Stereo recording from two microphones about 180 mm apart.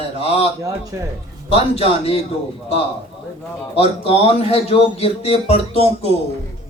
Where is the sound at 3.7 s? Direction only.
35° left (ahead or behind).